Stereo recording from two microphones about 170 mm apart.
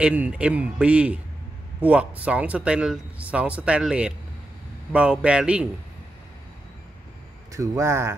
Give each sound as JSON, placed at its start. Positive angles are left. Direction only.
{"t": 0.0, "sound": "speech", "side_deg": -10}
{"t": 7.5, "sound": "speech", "side_deg": -20}